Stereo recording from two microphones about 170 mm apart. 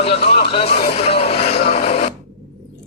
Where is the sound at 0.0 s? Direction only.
35° left (ahead or behind).